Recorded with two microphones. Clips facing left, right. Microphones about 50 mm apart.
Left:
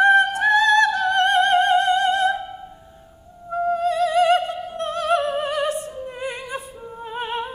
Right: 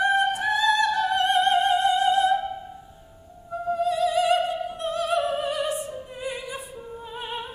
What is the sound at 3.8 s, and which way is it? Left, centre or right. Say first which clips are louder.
Opera: left 2 dB; left.